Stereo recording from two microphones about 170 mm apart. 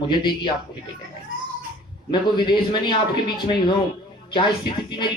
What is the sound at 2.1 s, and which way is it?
A man's voice, 25° left (ahead or behind).